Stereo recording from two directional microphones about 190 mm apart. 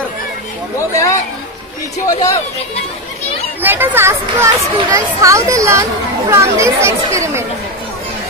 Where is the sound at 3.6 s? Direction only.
10° right (ahead or behind).